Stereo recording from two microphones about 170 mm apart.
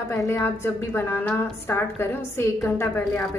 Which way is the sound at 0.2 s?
15° left (ahead or behind).